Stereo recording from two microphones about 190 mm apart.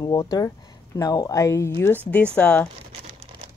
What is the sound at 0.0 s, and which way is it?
Speech, 20° left (ahead or behind).